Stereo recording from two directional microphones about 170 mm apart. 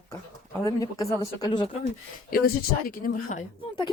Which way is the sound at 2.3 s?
60° left (ahead or behind).